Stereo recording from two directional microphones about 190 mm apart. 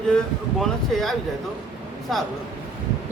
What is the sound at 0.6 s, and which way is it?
A man's voice, centre (ahead or behind).